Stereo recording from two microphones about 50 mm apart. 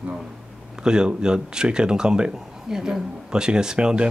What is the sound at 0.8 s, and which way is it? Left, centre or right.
Speech, centre.